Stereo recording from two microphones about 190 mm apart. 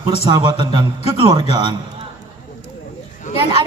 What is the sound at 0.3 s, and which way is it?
A woman's voice, 25° right (ahead or behind).